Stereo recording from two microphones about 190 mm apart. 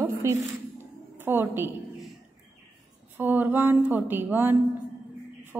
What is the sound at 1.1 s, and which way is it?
Speech, 10° right (ahead or behind).